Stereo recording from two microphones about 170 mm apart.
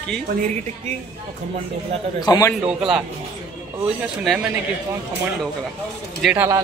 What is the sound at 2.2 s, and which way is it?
Speech, 20° left (ahead or behind).